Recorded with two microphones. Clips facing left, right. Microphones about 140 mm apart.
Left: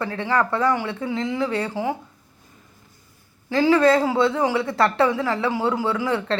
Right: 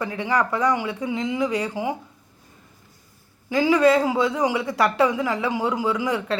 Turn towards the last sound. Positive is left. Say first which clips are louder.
# left 1 dB
turn(degrees=-15)  # may be behind; listen again after turning